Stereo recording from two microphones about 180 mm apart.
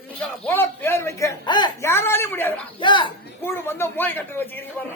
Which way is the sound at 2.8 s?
25° left (ahead or behind).